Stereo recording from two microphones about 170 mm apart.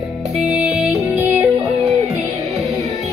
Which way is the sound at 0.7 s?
Centre (ahead or behind).